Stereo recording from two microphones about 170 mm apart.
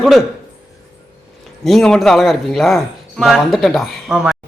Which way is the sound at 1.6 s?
Centre (ahead or behind).